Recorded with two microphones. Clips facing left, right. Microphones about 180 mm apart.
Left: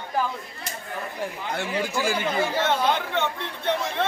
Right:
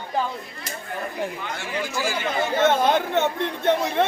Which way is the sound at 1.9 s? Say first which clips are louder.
Even; 55° left (ahead or behind).